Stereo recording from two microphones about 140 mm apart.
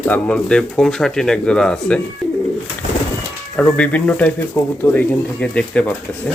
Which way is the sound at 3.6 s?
10° left (ahead or behind).